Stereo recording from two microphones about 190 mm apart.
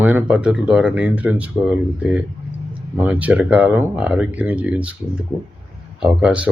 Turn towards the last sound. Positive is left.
turn(degrees=-5)  # may be behind; listen again after turning